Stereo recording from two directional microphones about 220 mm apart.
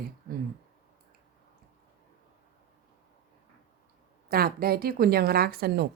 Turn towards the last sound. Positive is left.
turn(degrees=-45)  # may be behind; listen again after turning